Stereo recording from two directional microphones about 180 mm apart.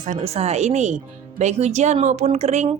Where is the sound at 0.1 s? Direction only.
35° right (ahead or behind).